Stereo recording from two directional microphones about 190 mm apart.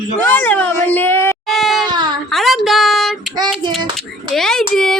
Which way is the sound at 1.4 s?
Centre (ahead or behind).